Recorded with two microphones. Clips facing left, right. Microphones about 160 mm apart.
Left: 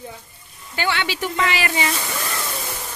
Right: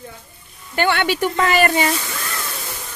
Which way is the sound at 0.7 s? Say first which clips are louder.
Right 5 dB; 55° right (ahead or behind).